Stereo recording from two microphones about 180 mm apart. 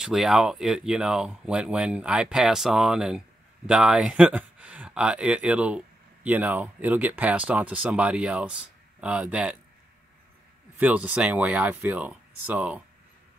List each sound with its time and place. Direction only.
0.0 s speech: centre (ahead or behind)
10.8 s speech: 10° right (ahead or behind)